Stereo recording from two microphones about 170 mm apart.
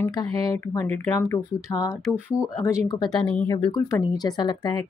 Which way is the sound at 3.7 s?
25° left (ahead or behind).